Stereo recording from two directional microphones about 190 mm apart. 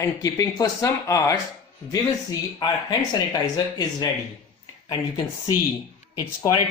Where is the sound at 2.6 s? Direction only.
25° left (ahead or behind).